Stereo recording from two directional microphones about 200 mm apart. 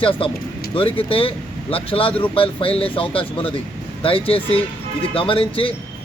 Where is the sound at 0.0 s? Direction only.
25° left (ahead or behind).